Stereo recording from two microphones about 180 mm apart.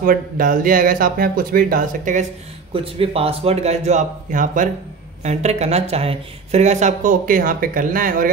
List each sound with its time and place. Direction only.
0.0 s speech: 50° right (ahead or behind)
2.7 s speech: 30° right (ahead or behind); by 8.3 s 50° right (ahead or behind)